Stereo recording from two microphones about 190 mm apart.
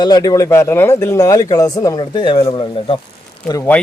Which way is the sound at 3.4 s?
15° left (ahead or behind).